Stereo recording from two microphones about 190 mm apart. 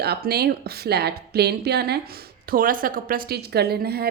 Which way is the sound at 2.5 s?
45° right (ahead or behind).